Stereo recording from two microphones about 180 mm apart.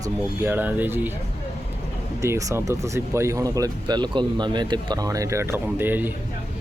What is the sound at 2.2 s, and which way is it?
Speech, 15° right (ahead or behind).